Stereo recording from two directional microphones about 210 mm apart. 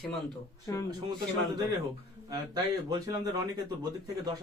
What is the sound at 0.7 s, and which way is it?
Speech, 15° left (ahead or behind).